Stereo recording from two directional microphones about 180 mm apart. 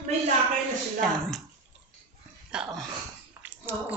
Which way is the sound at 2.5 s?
5° right (ahead or behind).